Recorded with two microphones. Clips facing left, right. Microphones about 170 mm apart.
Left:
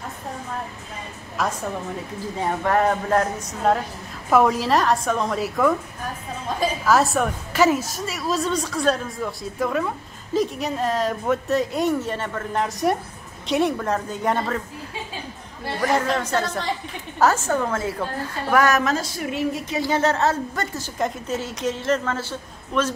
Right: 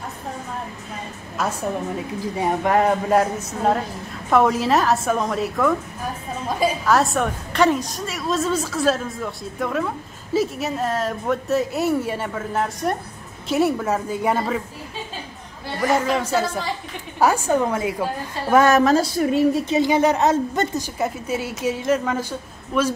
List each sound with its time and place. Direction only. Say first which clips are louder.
1.4 s a woman's voice: even; centre (ahead or behind)
2.3 s a woman's voice: right 2 dB; 15° right (ahead or behind)
6.9 s a woman's voice: left 2 dB; centre (ahead or behind)
15.6 s a woman's voice: right 1 dB; 5° right (ahead or behind)
18.5 s a woman's voice: right 5 dB; 25° right (ahead or behind)
19.7 s a woman's voice: right 4 dB; 15° right (ahead or behind)